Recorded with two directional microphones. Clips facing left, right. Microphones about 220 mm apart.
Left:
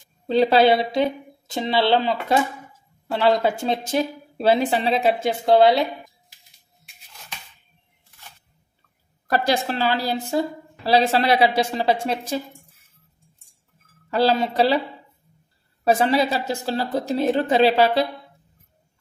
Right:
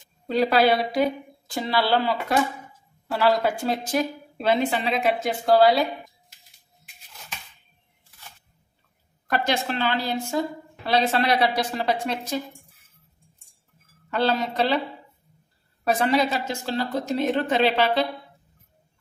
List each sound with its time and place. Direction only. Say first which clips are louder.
0.3 s a woman's voice: left 4 dB; 25° left (ahead or behind)
4.4 s a woman's voice: left 3 dB; 35° left (ahead or behind)
9.3 s a woman's voice: left 3 dB; 35° left (ahead or behind)
14.1 s a woman's voice: left 4 dB; 30° left (ahead or behind)
15.8 s a woman's voice: left 3 dB; 30° left (ahead or behind)